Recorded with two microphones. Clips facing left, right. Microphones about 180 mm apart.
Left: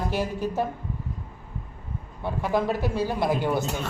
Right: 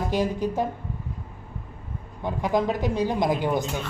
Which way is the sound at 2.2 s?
15° right (ahead or behind).